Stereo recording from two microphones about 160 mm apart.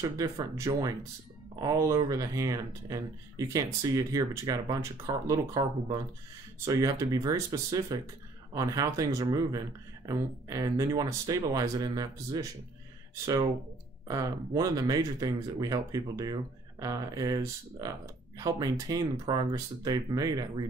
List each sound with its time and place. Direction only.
0.0 s speech: 20° right (ahead or behind)